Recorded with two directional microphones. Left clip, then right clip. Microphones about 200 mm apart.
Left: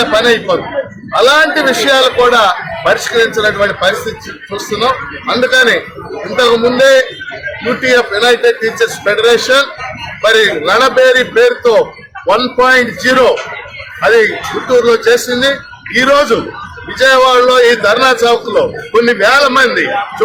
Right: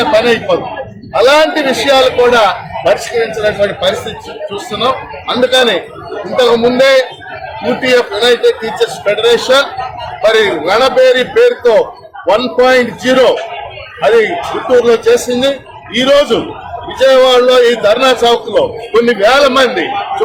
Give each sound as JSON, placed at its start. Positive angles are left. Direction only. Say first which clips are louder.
{"t": 0.0, "sound": "a man's voice", "louder": "even", "side_deg": 5}
{"t": 5.3, "sound": "a man's voice", "louder": "left 1 dB", "side_deg": 0}
{"t": 14.8, "sound": "a man's voice", "louder": "even", "side_deg": -5}
{"t": 15.4, "sound": "a man's voice", "louder": "left 1 dB", "side_deg": -25}
{"t": 17.0, "sound": "a man's voice", "louder": "even", "side_deg": 0}